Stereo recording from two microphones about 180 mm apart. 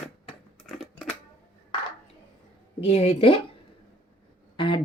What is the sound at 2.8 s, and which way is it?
Speech, 35° left (ahead or behind).